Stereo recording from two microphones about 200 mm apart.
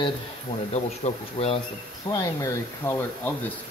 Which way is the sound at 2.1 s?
15° left (ahead or behind).